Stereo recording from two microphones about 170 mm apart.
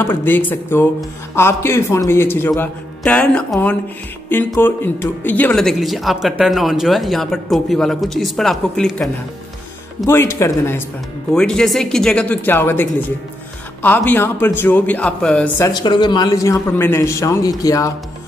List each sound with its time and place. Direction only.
0.0 s a man's voice: 10° left (ahead or behind)
10.0 s a man's voice: 15° left (ahead or behind)
11.3 s speech: 5° left (ahead or behind)
13.8 s a man's voice: 10° left (ahead or behind)
15.7 s a man's voice: 25° left (ahead or behind)